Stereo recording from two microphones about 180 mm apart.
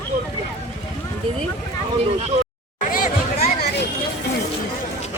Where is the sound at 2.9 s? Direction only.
55° left (ahead or behind).